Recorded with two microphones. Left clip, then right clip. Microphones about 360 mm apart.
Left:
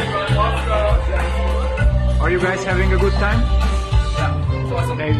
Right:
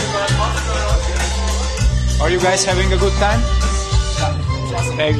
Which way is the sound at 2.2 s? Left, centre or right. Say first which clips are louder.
Right 4 dB; centre.